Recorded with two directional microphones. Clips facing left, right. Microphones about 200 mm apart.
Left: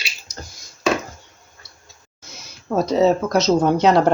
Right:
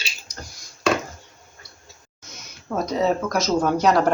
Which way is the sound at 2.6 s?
30° left (ahead or behind).